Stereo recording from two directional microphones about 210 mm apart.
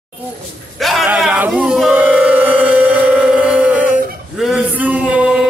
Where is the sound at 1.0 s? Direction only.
5° right (ahead or behind).